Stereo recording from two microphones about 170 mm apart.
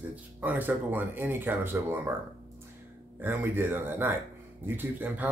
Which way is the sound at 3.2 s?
10° right (ahead or behind).